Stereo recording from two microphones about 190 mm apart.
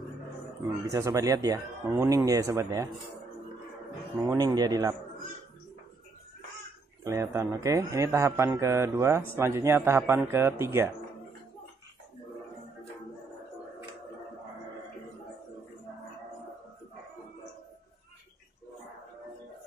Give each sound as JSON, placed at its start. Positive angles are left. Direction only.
{"t": 0.9, "sound": "a man's voice", "side_deg": -20}
{"t": 4.3, "sound": "a man's voice", "side_deg": -20}
{"t": 7.1, "sound": "a man's voice", "side_deg": -15}